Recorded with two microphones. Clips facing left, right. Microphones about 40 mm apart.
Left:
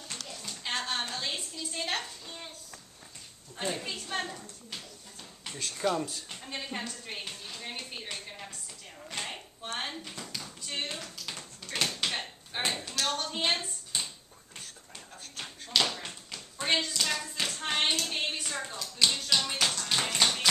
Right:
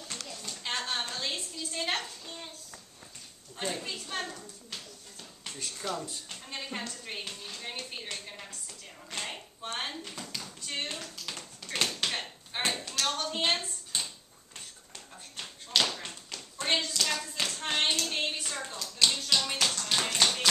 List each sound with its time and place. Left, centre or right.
0.1 s a sound: centre
3.5 s a woman's voice: centre
5.8 s speech: left
6.4 s speech: centre
9.1 s a sound: centre
15.7 s tap: centre